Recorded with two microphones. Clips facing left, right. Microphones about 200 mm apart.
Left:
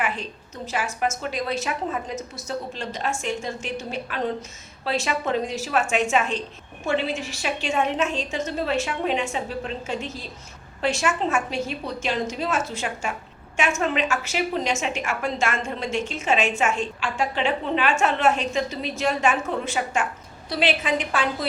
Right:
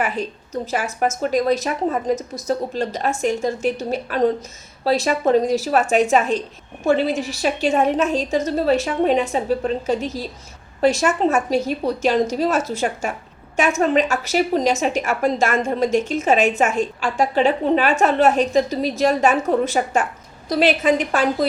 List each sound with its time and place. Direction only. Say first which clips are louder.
0.7 s a woman's voice: right 3 dB; 40° right (ahead or behind)